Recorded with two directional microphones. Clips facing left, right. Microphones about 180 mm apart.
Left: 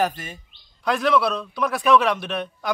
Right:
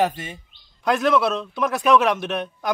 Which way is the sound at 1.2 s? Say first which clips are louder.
Right 1 dB; 20° right (ahead or behind).